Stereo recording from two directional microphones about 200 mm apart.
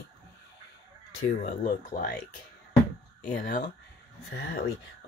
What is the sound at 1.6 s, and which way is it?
Speech, 45° left (ahead or behind).